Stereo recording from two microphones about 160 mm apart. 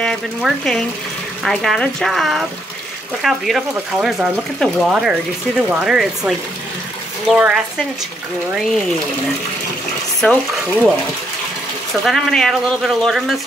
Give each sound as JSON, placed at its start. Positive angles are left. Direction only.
{"t": 0.0, "sound": "speech", "side_deg": 0}
{"t": 10.2, "sound": "speech", "side_deg": 5}
{"t": 11.9, "sound": "speech", "side_deg": 0}